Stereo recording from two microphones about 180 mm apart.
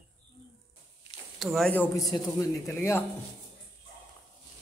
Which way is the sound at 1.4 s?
Centre (ahead or behind).